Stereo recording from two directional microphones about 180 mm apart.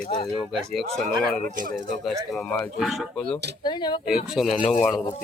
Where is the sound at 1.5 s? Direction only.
45° right (ahead or behind).